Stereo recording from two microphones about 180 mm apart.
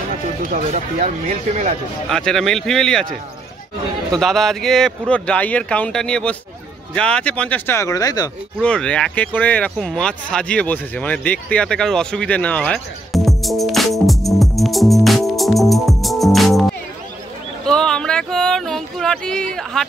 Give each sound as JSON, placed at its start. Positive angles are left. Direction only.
{"t": 0.4, "sound": "speech", "side_deg": -45}
{"t": 2.0, "sound": "speech", "side_deg": 5}
{"t": 4.2, "sound": "speech", "side_deg": 0}
{"t": 8.5, "sound": "speech", "side_deg": 5}
{"t": 17.6, "sound": "a sound", "side_deg": 5}